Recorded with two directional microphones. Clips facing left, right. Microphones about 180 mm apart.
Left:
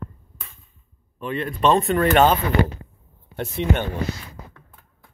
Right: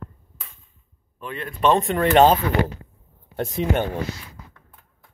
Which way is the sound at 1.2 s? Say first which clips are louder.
Left 1 dB; centre (ahead or behind).